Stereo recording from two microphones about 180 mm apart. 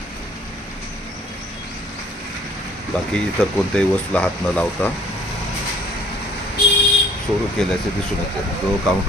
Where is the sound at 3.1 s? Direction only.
5° left (ahead or behind).